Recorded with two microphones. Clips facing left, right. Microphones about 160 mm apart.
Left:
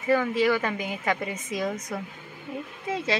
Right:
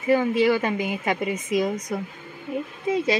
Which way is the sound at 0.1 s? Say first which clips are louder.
Right 3 dB; 25° right (ahead or behind).